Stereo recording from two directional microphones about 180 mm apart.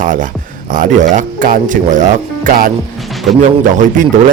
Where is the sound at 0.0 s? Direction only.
45° right (ahead or behind).